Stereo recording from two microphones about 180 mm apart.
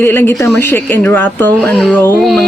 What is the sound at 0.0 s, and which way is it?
Speech, 10° left (ahead or behind).